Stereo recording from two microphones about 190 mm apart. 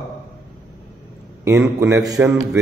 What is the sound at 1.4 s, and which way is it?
Mantra, 15° right (ahead or behind).